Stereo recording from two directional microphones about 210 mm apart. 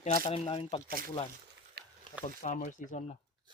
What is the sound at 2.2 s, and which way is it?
Speech, 35° left (ahead or behind).